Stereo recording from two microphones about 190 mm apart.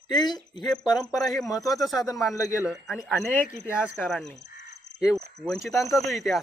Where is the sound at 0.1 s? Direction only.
20° left (ahead or behind).